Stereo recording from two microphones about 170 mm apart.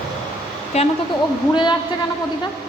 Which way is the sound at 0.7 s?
40° left (ahead or behind).